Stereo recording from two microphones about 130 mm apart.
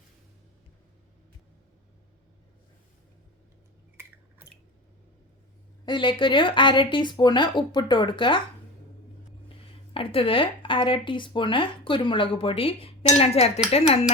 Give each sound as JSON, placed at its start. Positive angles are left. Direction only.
{"t": 5.8, "sound": "speech", "side_deg": 40}
{"t": 9.9, "sound": "speech", "side_deg": 45}